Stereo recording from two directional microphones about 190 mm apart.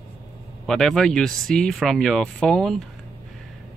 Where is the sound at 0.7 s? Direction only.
Centre (ahead or behind).